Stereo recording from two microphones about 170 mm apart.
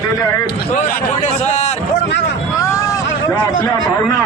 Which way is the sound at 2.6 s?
20° left (ahead or behind).